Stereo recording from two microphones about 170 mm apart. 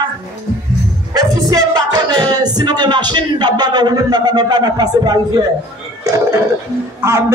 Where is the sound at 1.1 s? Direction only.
20° right (ahead or behind).